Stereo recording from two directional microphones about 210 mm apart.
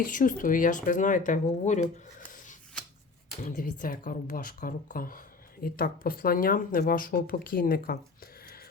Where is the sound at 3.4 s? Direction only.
40° left (ahead or behind).